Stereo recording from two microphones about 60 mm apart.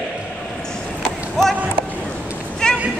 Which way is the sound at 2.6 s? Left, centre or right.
Centre.